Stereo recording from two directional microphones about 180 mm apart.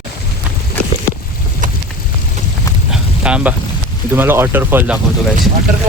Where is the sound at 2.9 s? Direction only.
5° right (ahead or behind).